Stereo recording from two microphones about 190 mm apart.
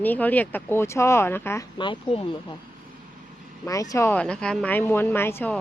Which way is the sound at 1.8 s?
25° left (ahead or behind).